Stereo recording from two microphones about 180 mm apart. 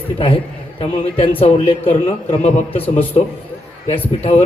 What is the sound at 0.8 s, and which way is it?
Speech, 30° left (ahead or behind).